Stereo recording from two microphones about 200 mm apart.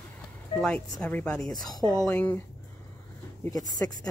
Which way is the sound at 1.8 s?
Centre (ahead or behind).